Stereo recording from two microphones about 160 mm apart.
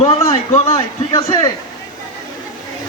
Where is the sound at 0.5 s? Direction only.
35° left (ahead or behind).